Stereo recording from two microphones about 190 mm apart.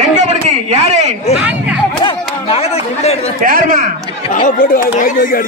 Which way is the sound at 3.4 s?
45° right (ahead or behind).